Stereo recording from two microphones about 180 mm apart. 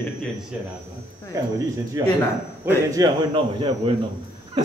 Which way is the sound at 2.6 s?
20° right (ahead or behind).